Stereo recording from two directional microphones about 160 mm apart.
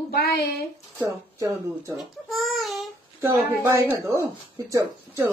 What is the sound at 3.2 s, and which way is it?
A woman's voice, 15° right (ahead or behind).